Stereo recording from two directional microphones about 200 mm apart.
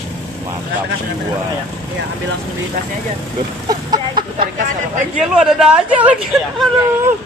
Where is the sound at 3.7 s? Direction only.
20° right (ahead or behind).